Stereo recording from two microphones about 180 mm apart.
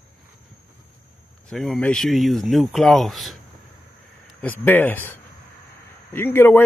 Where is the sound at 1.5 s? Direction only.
Centre (ahead or behind).